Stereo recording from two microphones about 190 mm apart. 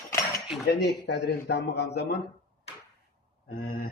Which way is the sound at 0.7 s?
65° left (ahead or behind).